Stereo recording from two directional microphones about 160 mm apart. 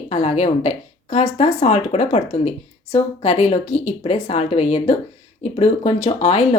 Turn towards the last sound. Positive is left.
turn(degrees=45)  # may be behind; listen again after turning